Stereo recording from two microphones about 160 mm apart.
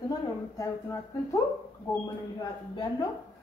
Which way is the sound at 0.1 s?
20° left (ahead or behind).